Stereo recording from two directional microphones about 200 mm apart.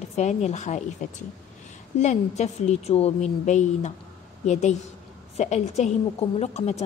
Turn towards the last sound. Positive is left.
turn(degrees=35)  # may be behind; listen again after turning